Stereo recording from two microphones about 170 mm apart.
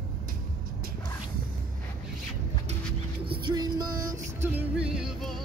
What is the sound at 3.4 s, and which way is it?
Music, 25° right (ahead or behind).